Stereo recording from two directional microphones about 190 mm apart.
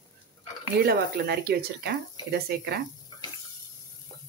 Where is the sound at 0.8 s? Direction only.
55° right (ahead or behind).